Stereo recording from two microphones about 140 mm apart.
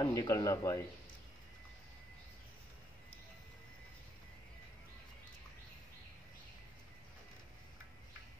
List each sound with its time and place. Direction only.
0.0 s a man's voice: 25° left (ahead or behind)